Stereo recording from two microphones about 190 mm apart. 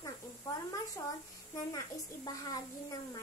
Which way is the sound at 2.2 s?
20° left (ahead or behind).